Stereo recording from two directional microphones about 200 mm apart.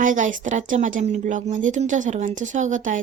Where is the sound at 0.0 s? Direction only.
40° right (ahead or behind).